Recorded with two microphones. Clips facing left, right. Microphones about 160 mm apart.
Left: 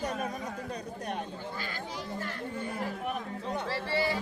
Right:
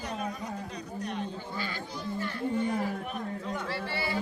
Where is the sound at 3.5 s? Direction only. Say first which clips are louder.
Left 5 dB; 35° left (ahead or behind).